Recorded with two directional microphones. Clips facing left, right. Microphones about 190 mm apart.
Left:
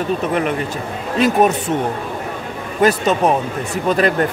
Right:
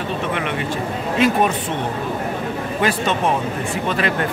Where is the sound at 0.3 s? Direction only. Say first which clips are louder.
Left 4 dB; 40° left (ahead or behind).